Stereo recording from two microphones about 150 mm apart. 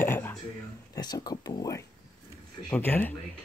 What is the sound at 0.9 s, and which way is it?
Speech, 25° left (ahead or behind).